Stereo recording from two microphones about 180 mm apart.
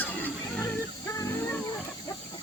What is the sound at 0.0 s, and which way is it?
Music, 10° left (ahead or behind).